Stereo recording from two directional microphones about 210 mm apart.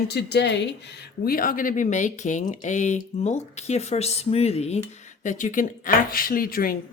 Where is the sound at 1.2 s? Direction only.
45° left (ahead or behind).